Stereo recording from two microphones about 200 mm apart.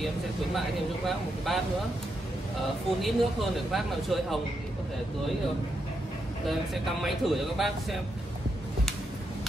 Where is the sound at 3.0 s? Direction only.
Centre (ahead or behind).